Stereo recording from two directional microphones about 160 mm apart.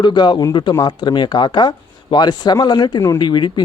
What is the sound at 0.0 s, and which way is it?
Speech, 30° left (ahead or behind).